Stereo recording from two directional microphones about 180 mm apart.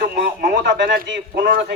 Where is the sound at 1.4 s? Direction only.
50° right (ahead or behind).